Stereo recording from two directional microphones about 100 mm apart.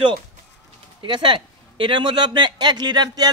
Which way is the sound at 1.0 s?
55° right (ahead or behind).